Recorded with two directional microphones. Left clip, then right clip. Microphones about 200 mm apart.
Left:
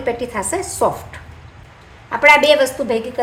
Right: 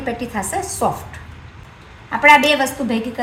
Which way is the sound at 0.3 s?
40° left (ahead or behind).